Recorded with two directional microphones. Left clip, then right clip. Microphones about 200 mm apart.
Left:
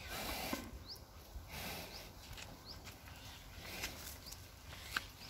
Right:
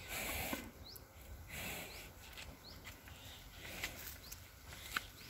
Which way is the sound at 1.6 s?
15° right (ahead or behind).